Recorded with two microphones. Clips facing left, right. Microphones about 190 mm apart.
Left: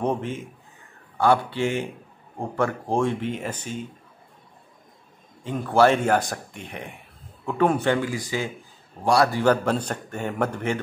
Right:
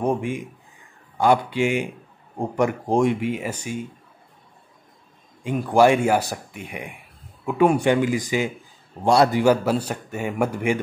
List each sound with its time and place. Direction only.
0.0 s speech: 10° right (ahead or behind)
5.4 s a man's voice: 15° right (ahead or behind)
9.4 s speech: 10° right (ahead or behind)